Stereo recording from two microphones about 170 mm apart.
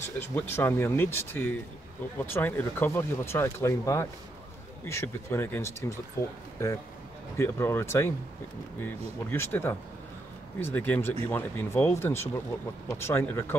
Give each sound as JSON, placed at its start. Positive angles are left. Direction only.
{"t": 0.0, "sound": "speech", "side_deg": 15}
{"t": 7.3, "sound": "speech", "side_deg": 15}